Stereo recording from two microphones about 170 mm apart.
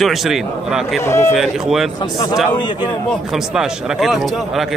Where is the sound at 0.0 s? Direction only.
Centre (ahead or behind).